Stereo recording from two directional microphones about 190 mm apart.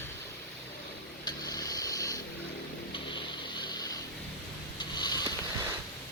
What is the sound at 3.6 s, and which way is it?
Vehicle, 20° left (ahead or behind).